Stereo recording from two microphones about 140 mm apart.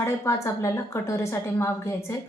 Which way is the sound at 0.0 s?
20° left (ahead or behind).